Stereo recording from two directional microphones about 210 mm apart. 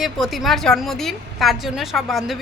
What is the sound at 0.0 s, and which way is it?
A woman's voice, centre (ahead or behind).